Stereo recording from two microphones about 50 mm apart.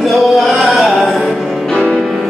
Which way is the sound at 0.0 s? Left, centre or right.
Centre.